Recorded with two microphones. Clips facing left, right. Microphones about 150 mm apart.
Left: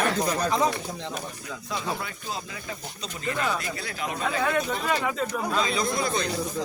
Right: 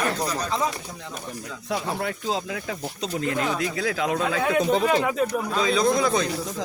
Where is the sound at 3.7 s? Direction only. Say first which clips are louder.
Right 8 dB; 90° right.